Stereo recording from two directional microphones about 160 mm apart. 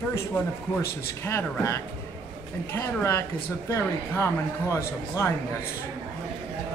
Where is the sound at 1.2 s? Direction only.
15° left (ahead or behind).